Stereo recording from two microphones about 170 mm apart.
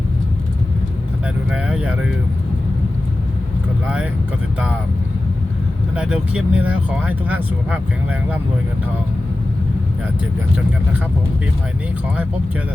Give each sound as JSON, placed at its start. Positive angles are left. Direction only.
{"t": 1.5, "sound": "speech", "side_deg": -5}
{"t": 6.0, "sound": "speech", "side_deg": -5}